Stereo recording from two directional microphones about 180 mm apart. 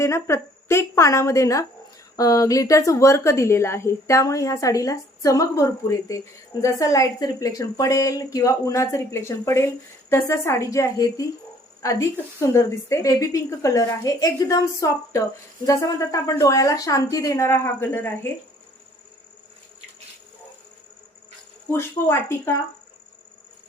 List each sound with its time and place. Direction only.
0.0 s speech: 15° left (ahead or behind)
21.7 s speech: 15° left (ahead or behind)